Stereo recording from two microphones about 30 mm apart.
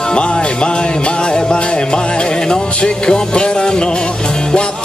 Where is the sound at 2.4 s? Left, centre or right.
Left.